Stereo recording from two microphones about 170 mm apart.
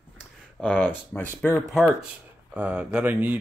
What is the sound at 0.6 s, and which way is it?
Speech, 10° left (ahead or behind).